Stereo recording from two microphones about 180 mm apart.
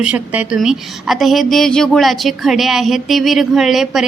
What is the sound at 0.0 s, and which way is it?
A woman's voice, 5° right (ahead or behind).